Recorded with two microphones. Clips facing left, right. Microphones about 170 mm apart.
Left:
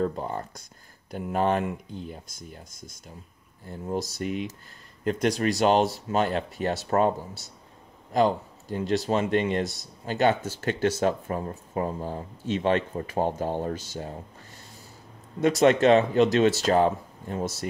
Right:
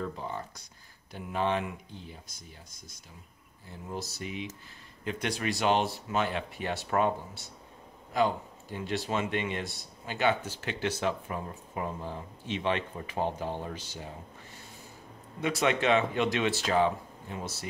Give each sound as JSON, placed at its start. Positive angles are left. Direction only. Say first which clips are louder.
{"t": 0.0, "sound": "speech", "louder": "left 8 dB", "side_deg": 45}
{"t": 4.2, "sound": "speech", "louder": "left 8 dB", "side_deg": 45}
{"t": 15.4, "sound": "speech", "louder": "left 8 dB", "side_deg": 45}